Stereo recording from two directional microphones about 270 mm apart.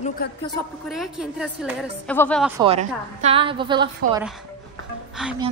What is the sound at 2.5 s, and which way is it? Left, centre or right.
A woman's voice, centre.